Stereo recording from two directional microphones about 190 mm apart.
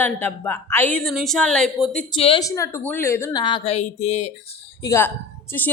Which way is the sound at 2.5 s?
15° left (ahead or behind).